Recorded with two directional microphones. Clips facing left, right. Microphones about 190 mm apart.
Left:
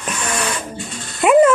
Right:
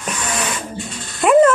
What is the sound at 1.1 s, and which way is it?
Music, 5° left (ahead or behind).